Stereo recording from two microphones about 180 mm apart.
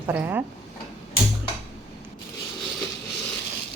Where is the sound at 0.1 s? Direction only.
10° right (ahead or behind).